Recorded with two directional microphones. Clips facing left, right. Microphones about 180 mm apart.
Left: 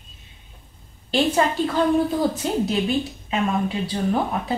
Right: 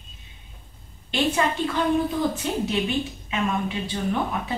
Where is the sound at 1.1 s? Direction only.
35° left (ahead or behind).